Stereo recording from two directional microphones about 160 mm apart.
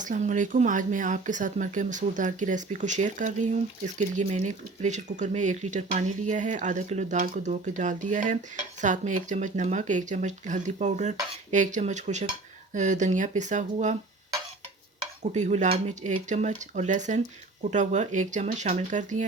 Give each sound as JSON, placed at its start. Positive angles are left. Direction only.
{"t": 0.0, "sound": "speech", "side_deg": -50}
{"t": 15.2, "sound": "speech", "side_deg": -45}